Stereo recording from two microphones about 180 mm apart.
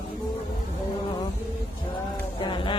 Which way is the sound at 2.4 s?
30° left (ahead or behind).